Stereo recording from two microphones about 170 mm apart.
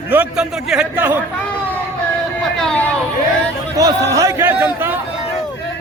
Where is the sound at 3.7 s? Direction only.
20° right (ahead or behind).